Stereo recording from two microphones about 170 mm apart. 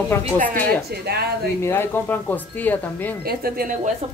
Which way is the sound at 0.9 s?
70° right (ahead or behind).